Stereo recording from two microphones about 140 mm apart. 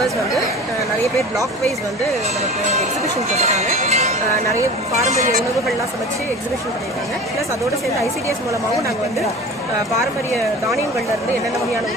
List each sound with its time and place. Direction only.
3.3 s speech: 50° right (ahead or behind)